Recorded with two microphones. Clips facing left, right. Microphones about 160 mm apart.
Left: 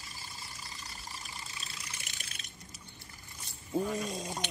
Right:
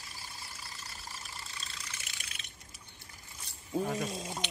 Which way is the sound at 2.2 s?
40° left (ahead or behind).